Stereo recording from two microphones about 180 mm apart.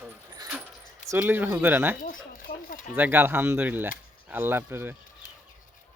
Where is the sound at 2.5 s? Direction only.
50° left (ahead or behind).